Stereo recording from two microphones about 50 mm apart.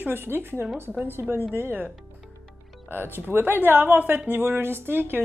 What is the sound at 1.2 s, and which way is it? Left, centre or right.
Speech, right.